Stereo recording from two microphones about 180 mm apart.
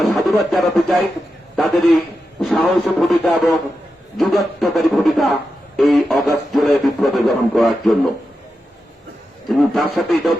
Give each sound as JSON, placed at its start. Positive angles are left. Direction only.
{"t": 0.0, "sound": "speech", "side_deg": 0}
{"t": 9.5, "sound": "speech", "side_deg": 0}